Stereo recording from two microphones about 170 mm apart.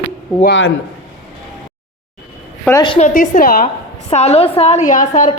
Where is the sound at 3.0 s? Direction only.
50° left (ahead or behind).